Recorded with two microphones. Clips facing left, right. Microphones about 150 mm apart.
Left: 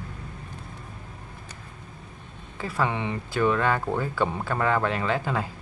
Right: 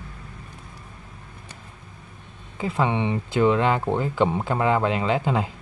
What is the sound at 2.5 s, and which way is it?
Speech, 20° right (ahead or behind).